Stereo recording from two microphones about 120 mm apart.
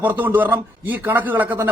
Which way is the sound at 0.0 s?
15° right (ahead or behind).